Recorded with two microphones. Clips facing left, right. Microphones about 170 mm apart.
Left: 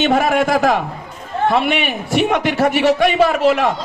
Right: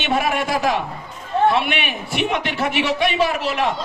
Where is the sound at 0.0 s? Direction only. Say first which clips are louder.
Left 6 dB; 45° left (ahead or behind).